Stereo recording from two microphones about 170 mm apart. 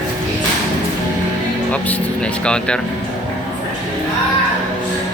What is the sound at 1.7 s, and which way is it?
Speech, 10° left (ahead or behind).